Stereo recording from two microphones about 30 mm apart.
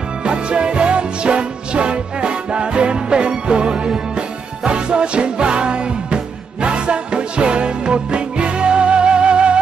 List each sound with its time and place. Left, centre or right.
0.2 s music: right